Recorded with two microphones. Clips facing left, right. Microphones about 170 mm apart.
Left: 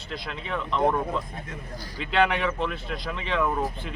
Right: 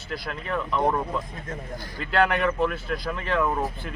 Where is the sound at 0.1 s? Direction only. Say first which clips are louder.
Right 2 dB; 5° right (ahead or behind).